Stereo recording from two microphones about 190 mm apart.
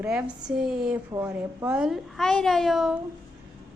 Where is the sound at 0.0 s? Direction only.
5° right (ahead or behind).